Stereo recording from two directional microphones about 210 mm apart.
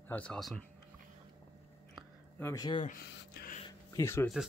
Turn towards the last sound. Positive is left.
turn(degrees=15)  # may be behind; listen again after turning